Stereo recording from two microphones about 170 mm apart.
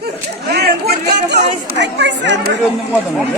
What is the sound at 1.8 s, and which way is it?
Speech, 90° right.